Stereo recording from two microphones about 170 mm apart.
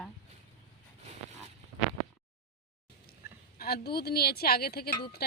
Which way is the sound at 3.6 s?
65° left (ahead or behind).